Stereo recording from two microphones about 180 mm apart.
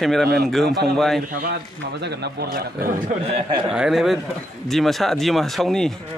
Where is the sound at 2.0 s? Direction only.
65° right (ahead or behind).